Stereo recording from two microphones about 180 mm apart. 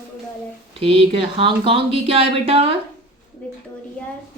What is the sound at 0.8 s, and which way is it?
Speech, 30° right (ahead or behind).